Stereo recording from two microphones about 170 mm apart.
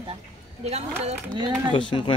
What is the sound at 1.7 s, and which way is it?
Speech, 30° left (ahead or behind).